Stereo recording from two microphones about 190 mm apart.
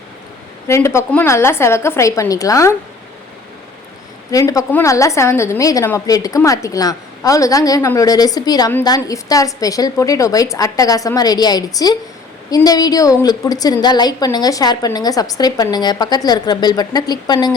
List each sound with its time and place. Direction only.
0.7 s a woman's voice: 15° left (ahead or behind)
4.3 s a woman's voice: 20° left (ahead or behind)